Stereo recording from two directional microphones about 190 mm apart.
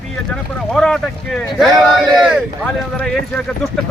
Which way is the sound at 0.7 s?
5° left (ahead or behind).